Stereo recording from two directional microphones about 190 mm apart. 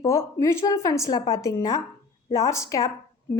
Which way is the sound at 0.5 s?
20° left (ahead or behind).